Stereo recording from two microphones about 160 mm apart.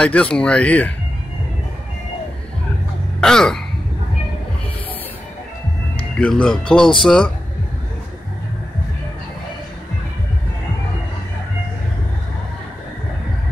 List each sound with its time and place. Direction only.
0.0 s speech: 5° left (ahead or behind)
3.2 s speech: 5° left (ahead or behind)
6.1 s speech: 5° left (ahead or behind)